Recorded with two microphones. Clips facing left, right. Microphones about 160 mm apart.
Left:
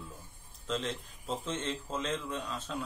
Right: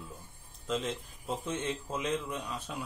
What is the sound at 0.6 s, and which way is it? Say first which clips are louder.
Speech: right 1 dB; 5° right (ahead or behind).